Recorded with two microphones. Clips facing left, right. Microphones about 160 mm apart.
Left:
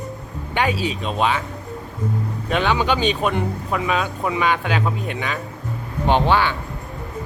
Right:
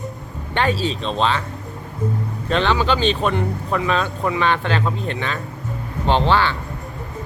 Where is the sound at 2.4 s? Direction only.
10° left (ahead or behind).